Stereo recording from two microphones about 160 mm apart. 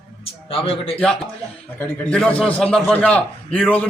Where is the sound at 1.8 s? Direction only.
5° left (ahead or behind).